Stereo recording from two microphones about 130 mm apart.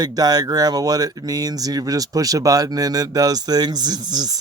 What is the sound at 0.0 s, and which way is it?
Speech, 30° right (ahead or behind).